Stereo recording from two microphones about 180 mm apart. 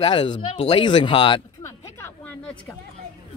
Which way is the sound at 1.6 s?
10° left (ahead or behind).